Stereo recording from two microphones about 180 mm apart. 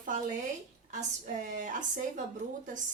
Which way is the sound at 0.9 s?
45° right (ahead or behind).